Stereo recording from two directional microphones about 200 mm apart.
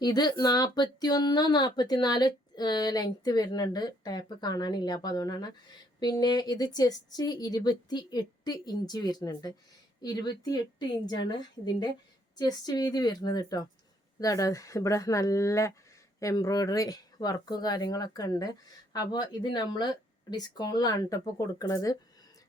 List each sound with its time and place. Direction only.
0.0 s speech: 20° left (ahead or behind)